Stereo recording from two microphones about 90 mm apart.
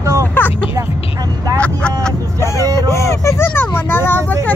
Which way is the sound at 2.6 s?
40° right (ahead or behind).